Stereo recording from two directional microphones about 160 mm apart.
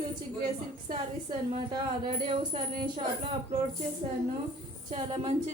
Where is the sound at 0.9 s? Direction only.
30° right (ahead or behind).